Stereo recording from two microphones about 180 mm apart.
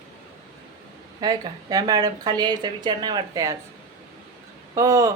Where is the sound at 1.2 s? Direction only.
20° right (ahead or behind).